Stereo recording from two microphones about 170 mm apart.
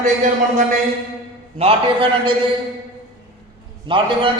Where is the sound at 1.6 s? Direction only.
30° right (ahead or behind).